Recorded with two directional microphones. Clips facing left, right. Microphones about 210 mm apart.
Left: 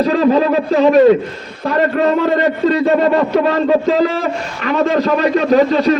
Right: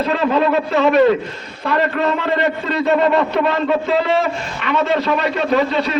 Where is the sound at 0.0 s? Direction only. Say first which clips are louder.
Left 4 dB; 40° left (ahead or behind).